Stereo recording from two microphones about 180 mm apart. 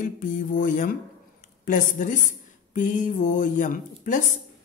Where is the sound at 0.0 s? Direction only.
45° left (ahead or behind).